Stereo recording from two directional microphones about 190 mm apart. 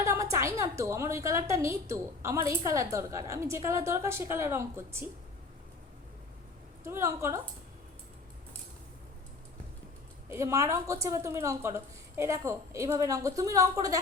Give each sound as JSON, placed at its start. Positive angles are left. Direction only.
{"t": 0.0, "sound": "a woman's voice", "side_deg": -15}
{"t": 6.8, "sound": "a woman's voice", "side_deg": -15}
{"t": 10.2, "sound": "a woman's voice", "side_deg": -15}